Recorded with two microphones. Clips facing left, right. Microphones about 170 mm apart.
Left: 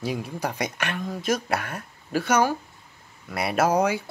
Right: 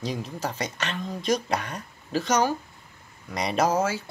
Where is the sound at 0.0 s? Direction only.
10° left (ahead or behind).